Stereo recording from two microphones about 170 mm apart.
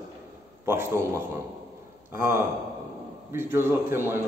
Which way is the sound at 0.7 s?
15° right (ahead or behind).